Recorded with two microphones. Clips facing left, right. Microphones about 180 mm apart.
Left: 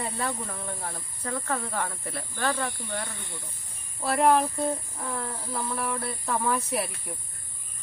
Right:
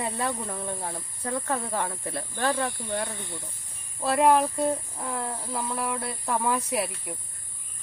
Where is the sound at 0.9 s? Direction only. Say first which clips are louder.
Right 2 dB; 25° right (ahead or behind).